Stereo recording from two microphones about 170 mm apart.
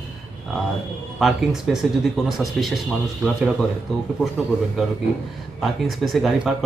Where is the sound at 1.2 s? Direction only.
Centre (ahead or behind).